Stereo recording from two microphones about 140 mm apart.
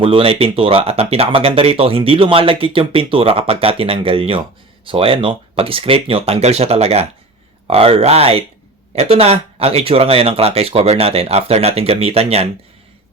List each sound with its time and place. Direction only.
0.0 s speech: 40° right (ahead or behind)